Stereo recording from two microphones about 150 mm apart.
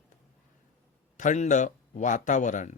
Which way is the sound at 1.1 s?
55° left (ahead or behind).